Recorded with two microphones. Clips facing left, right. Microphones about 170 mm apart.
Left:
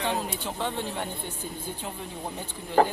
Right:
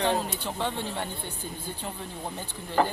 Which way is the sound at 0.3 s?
Centre (ahead or behind).